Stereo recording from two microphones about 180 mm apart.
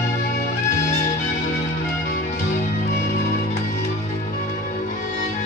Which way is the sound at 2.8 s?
40° left (ahead or behind).